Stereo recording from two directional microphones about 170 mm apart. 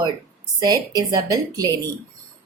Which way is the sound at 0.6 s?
25° right (ahead or behind).